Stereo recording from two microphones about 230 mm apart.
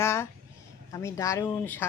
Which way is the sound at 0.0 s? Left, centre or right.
Centre.